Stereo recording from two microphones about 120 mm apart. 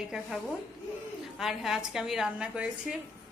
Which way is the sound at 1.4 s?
5° right (ahead or behind).